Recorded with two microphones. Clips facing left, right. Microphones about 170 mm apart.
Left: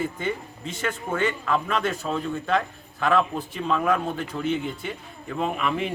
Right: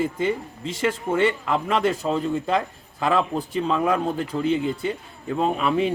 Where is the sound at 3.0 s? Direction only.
30° right (ahead or behind).